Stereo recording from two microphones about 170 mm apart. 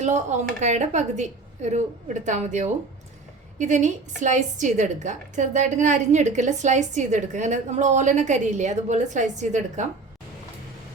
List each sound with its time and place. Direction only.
0.0 s a woman's voice: 45° right (ahead or behind)